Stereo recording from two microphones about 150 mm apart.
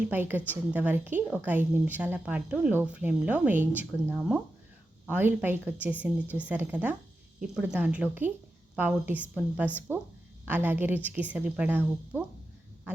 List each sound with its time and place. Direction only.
0.0 s a woman's voice: 10° right (ahead or behind)